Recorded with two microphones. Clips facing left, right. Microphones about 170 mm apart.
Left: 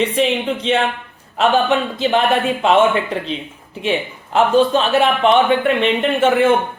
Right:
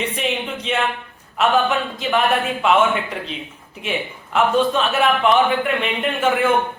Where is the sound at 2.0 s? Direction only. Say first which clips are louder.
Left 2 dB; 30° left (ahead or behind).